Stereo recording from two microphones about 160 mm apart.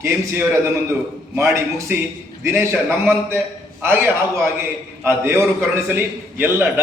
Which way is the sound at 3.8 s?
15° right (ahead or behind).